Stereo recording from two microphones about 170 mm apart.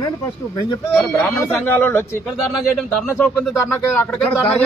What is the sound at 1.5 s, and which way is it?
Speech, 10° left (ahead or behind).